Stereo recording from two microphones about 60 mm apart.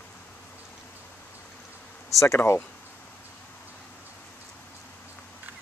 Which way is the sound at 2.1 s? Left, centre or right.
Left.